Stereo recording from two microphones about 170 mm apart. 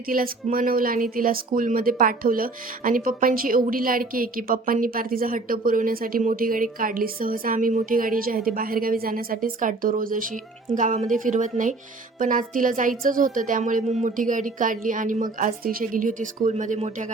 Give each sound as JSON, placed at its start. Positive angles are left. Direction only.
{"t": 0.1, "sound": "a woman's voice", "side_deg": -55}